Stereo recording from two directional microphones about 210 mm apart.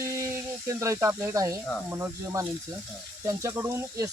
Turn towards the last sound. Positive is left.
turn(degrees=-15)  # may be behind; listen again after turning